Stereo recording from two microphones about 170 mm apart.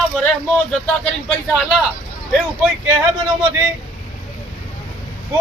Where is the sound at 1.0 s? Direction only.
5° left (ahead or behind).